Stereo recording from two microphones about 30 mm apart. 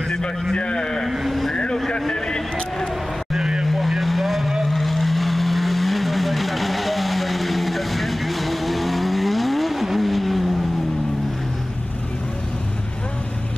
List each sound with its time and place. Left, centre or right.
0.6 s a man's voice: left
1.1 s vehicle: centre
1.9 s a sound: left
3.3 s vehicle: right
3.6 s vehicle: centre
4.6 s vehicle: centre